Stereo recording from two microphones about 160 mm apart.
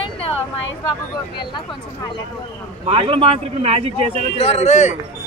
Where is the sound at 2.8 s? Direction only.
35° right (ahead or behind).